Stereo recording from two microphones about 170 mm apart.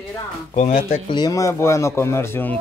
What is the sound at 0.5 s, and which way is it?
Speech, 45° left (ahead or behind).